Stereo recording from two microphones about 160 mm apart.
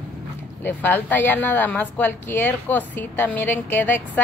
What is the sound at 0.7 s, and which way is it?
A woman's voice, 10° left (ahead or behind).